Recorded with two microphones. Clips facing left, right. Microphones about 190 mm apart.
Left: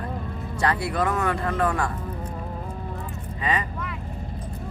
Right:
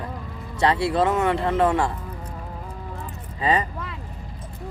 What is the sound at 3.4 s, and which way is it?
Speech, 30° right (ahead or behind).